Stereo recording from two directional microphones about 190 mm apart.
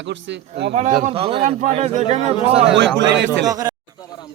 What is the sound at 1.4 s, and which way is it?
Speech, 40° right (ahead or behind).